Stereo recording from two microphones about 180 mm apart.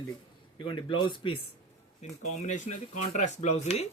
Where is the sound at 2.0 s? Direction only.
40° left (ahead or behind).